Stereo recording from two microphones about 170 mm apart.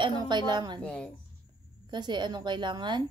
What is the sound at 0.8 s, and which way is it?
Speech, 5° left (ahead or behind).